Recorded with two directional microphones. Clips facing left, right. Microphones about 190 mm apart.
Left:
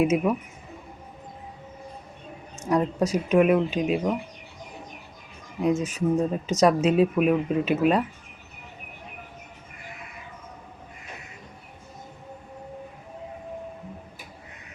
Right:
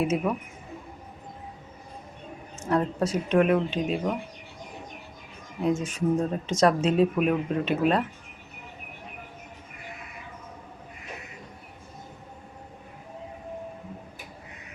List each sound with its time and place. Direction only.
0.0 s speech: 10° left (ahead or behind)
2.6 s speech: 10° left (ahead or behind)
5.8 s speech: 5° left (ahead or behind)